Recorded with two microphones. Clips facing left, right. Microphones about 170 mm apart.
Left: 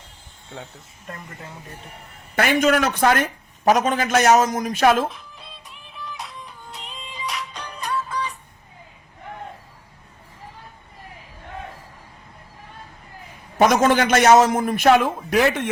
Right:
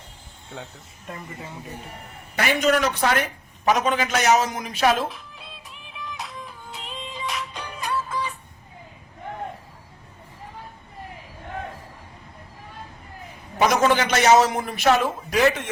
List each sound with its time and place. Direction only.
0.5 s speech: centre (ahead or behind)
2.3 s a man's voice: 50° left (ahead or behind)
5.1 s music: centre (ahead or behind)
13.6 s a man's voice: 50° left (ahead or behind)